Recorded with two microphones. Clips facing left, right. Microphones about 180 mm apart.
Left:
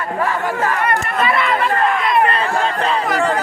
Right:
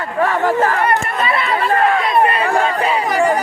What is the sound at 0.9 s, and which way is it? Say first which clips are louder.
Chatter: even; 30° right (ahead or behind).